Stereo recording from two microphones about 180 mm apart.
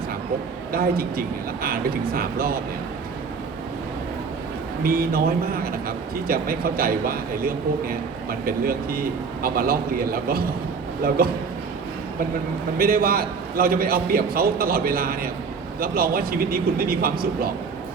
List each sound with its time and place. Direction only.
0.7 s a man's voice: 55° right (ahead or behind)
4.8 s a man's voice: 55° right (ahead or behind)
12.7 s a man's voice: 55° right (ahead or behind)